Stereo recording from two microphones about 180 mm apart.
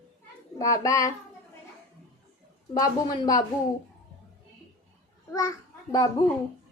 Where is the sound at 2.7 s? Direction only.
20° left (ahead or behind).